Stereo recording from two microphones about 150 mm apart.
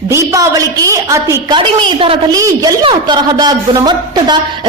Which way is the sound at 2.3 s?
25° right (ahead or behind).